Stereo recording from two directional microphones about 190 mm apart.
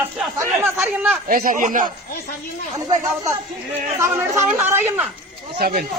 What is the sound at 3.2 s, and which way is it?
A woman's voice, 15° right (ahead or behind).